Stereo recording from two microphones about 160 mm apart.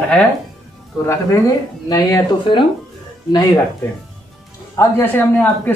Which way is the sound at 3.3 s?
20° left (ahead or behind).